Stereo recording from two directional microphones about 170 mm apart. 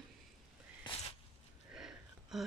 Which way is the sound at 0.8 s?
35° left (ahead or behind).